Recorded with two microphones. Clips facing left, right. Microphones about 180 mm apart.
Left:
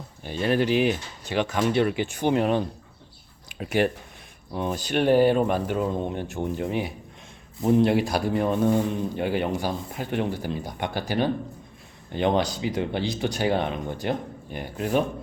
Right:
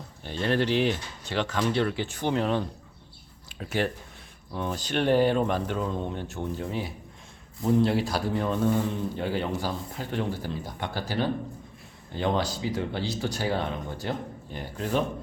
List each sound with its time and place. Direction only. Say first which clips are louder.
0.2 s speech: left 3 dB; 10° left (ahead or behind)